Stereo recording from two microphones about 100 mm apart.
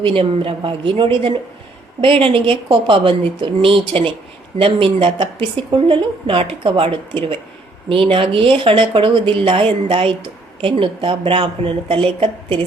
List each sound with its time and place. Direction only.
0.0 s speech: 65° right (ahead or behind)